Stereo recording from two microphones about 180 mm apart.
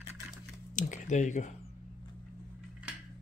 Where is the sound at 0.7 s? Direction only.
45° left (ahead or behind).